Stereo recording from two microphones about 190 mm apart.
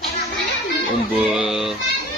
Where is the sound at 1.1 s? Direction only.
5° right (ahead or behind).